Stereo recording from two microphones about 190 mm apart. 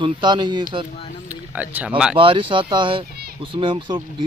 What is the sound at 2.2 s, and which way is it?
Speech, 25° right (ahead or behind).